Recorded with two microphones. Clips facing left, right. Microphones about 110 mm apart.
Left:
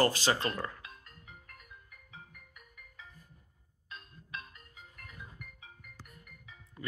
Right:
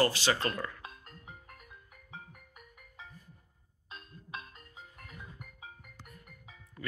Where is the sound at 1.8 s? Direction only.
35° right (ahead or behind).